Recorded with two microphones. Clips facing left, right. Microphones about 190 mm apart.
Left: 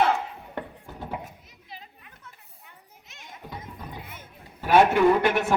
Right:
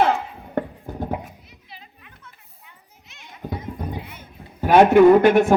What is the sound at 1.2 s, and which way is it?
Children playing, 45° left (ahead or behind).